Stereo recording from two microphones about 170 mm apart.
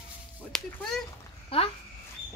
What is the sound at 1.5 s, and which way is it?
Speech, 35° left (ahead or behind).